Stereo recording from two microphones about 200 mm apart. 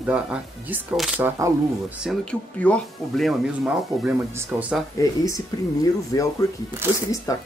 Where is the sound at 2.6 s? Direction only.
5° left (ahead or behind).